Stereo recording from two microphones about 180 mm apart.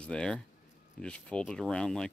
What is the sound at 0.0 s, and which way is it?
Speech, 5° left (ahead or behind).